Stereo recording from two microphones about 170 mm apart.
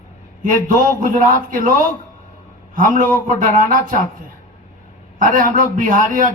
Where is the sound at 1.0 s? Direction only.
50° right (ahead or behind).